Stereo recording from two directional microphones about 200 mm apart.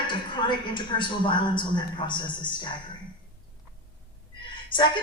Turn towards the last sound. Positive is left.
turn(degrees=25)  # may be behind; listen again after turning